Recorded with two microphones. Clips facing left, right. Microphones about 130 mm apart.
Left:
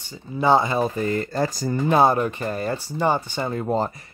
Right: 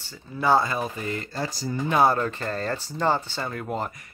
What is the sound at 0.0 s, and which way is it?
Speech, 15° left (ahead or behind).